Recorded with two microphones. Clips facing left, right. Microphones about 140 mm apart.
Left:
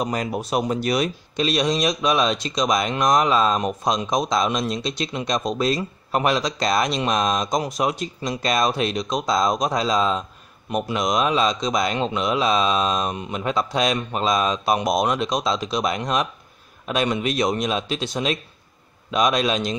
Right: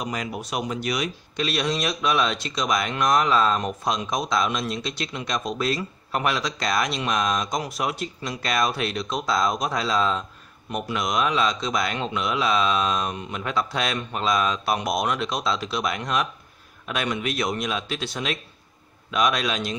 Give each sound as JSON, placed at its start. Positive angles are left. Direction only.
{"t": 0.0, "sound": "speech", "side_deg": 35}
{"t": 1.3, "sound": "speech", "side_deg": 20}